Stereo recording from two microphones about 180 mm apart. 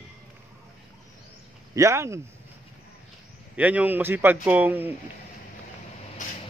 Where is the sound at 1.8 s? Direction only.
15° right (ahead or behind).